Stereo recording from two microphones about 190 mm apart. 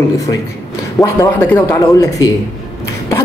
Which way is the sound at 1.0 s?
15° left (ahead or behind).